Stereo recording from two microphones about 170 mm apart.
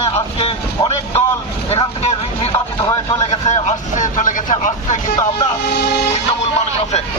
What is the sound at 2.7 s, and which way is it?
Speech, 20° left (ahead or behind).